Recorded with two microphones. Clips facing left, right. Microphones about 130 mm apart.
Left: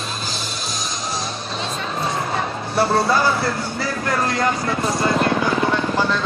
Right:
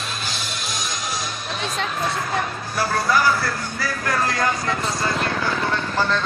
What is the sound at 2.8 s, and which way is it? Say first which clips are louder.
Speech: left 3 dB; 25° left (ahead or behind).